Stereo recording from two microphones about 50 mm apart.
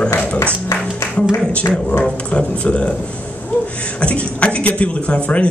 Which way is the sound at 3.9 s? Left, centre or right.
Left.